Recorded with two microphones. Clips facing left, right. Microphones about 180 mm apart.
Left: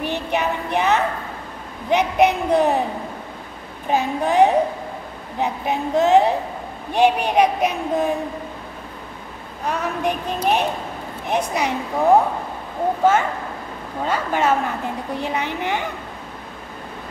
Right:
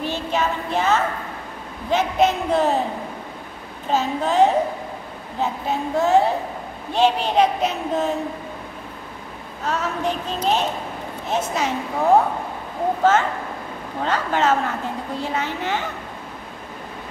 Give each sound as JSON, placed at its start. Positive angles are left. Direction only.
{"t": 0.0, "sound": "child singing", "side_deg": 15}
{"t": 1.9, "sound": "speech", "side_deg": 15}
{"t": 3.9, "sound": "speech", "side_deg": 15}
{"t": 9.7, "sound": "speech", "side_deg": 15}
{"t": 14.0, "sound": "speech", "side_deg": 10}